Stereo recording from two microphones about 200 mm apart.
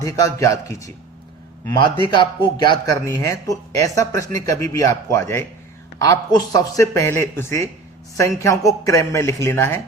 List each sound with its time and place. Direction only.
0.0 s a man's voice: 15° left (ahead or behind)